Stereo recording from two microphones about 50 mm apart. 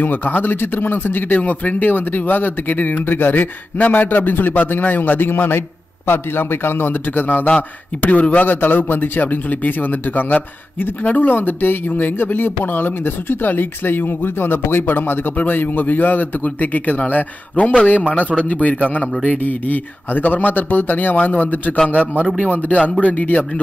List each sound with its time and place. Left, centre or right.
0.0 s speech: left
7.4 s a man's voice: left
8.5 s speech: left
11.0 s a man's voice: left